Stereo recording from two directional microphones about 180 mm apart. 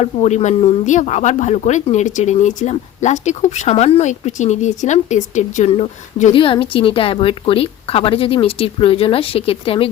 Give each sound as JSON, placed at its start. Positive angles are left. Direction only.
{"t": 0.0, "sound": "speech", "side_deg": 40}